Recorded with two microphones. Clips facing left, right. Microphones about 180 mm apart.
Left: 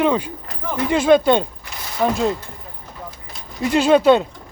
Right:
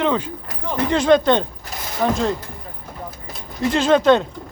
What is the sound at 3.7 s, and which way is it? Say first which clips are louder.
Speech: left 2 dB; 10° left (ahead or behind).